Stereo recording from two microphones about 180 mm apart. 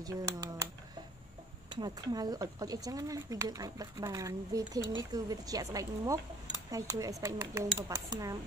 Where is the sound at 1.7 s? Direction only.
20° right (ahead or behind).